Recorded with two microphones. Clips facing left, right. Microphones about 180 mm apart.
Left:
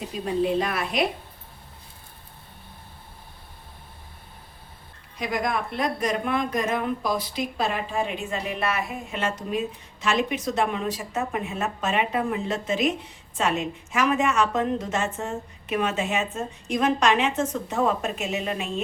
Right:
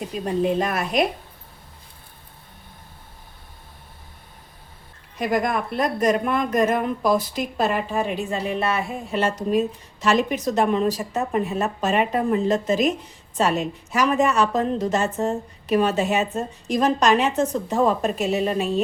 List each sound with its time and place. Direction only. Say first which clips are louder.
0.4 s a woman's voice: right 3 dB; 45° right (ahead or behind)
5.1 s speech: right 4 dB; 50° right (ahead or behind)